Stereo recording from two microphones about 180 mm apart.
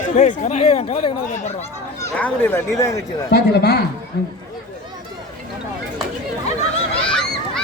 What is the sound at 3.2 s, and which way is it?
Speech, 65° left (ahead or behind).